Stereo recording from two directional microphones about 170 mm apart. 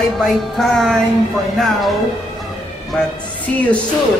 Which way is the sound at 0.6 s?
Centre (ahead or behind).